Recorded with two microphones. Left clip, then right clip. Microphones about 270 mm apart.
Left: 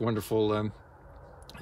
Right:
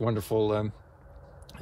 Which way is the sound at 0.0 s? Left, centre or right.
Centre.